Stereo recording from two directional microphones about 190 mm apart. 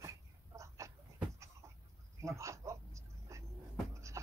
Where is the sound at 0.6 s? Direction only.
15° right (ahead or behind).